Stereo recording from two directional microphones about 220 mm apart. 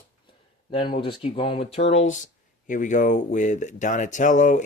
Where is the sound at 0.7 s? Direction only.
25° left (ahead or behind).